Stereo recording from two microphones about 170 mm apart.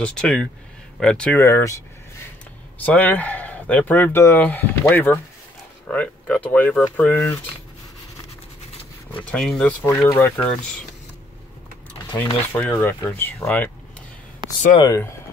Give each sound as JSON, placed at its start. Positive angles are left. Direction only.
{"t": 0.0, "sound": "speech", "side_deg": 5}
{"t": 9.2, "sound": "speech", "side_deg": 5}
{"t": 9.8, "sound": "speech", "side_deg": 15}
{"t": 12.5, "sound": "speech", "side_deg": 10}
{"t": 14.4, "sound": "a sound", "side_deg": -25}
{"t": 14.8, "sound": "speech", "side_deg": 20}